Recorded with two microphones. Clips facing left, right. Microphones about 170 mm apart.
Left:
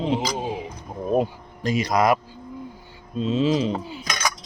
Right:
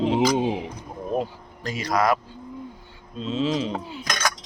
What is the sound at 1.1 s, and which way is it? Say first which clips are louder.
Speech: left 5 dB; 15° left (ahead or behind).